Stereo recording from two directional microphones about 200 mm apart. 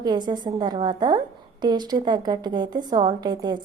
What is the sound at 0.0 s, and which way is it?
A woman's voice, 20° right (ahead or behind).